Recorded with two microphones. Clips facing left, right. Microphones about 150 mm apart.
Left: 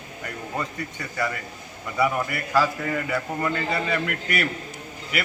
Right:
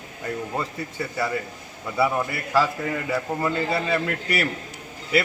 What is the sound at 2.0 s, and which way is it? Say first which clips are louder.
A man's voice: even; 25° right (ahead or behind).